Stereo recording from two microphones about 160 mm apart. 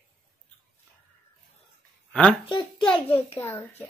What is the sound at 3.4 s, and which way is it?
Speech, 15° left (ahead or behind).